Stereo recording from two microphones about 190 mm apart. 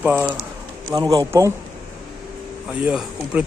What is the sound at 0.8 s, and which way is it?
Speech, 20° right (ahead or behind).